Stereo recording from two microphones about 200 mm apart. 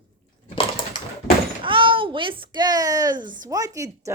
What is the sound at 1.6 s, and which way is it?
Speech, 25° right (ahead or behind).